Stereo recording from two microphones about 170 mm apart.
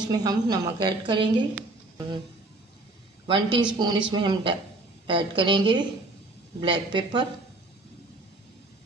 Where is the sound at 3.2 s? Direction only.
30° right (ahead or behind).